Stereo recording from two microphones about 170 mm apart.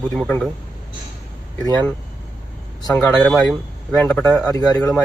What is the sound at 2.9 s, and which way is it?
Speech, 5° left (ahead or behind).